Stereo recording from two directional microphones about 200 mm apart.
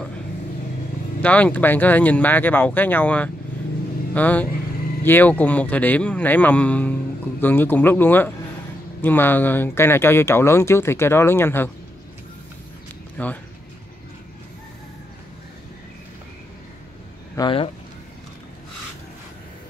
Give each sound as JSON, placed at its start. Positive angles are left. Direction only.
{"t": 1.2, "sound": "speech", "side_deg": 5}
{"t": 13.2, "sound": "speech", "side_deg": 5}
{"t": 17.4, "sound": "speech", "side_deg": 25}